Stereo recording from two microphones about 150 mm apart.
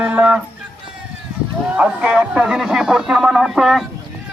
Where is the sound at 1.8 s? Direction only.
10° right (ahead or behind).